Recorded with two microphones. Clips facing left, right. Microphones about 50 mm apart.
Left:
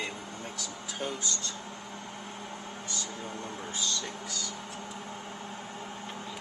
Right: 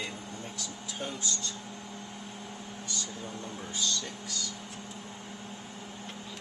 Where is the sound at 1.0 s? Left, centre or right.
Left.